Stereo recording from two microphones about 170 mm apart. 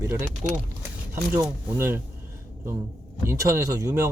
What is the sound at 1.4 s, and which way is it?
Speech, 15° right (ahead or behind).